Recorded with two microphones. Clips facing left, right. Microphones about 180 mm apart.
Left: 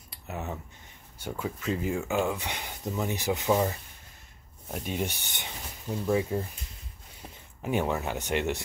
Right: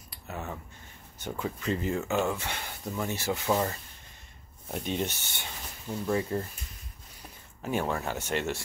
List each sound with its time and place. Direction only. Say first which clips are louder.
0.1 s a sound: left 2 dB; 20° left (ahead or behind)
1.1 s speech: even; 5° left (ahead or behind)
7.6 s speech: left 2 dB; 15° left (ahead or behind)